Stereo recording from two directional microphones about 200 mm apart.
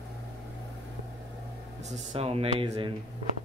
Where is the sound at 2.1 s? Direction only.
30° right (ahead or behind).